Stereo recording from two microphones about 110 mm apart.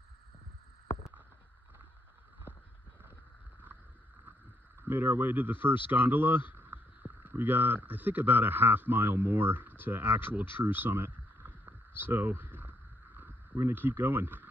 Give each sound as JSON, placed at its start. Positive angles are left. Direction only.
{"t": 0.8, "sound": "rowboat", "side_deg": 70}
{"t": 4.8, "sound": "speech", "side_deg": -15}
{"t": 10.6, "sound": "a sound", "side_deg": -15}